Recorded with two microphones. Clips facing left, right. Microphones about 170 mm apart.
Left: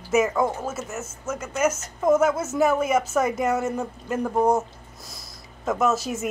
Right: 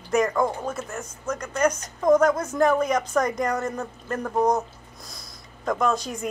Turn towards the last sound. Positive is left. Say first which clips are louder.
# left 2 dB
turn(degrees=5)  # may be behind; listen again after turning